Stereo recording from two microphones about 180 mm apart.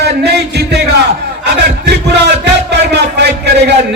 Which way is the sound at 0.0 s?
65° right (ahead or behind).